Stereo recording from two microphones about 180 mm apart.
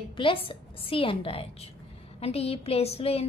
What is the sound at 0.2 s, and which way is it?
A woman's voice, 30° left (ahead or behind).